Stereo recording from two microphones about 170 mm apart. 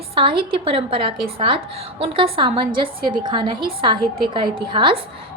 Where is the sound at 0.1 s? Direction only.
30° right (ahead or behind).